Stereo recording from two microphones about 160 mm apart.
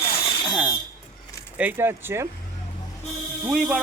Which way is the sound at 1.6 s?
10° right (ahead or behind).